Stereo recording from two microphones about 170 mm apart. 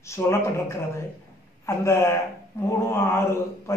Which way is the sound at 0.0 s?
15° left (ahead or behind).